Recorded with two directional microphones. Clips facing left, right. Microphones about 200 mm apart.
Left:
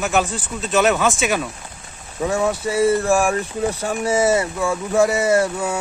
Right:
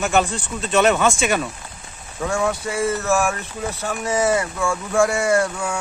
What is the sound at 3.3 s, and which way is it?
Speech, 30° left (ahead or behind).